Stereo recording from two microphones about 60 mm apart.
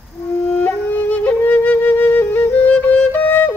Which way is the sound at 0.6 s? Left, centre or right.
Left.